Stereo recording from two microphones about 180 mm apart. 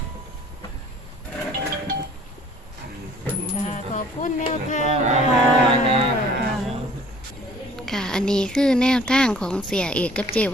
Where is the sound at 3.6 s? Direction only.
45° left (ahead or behind).